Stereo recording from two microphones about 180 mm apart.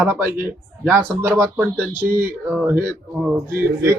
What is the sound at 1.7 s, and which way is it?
Speech, 15° right (ahead or behind).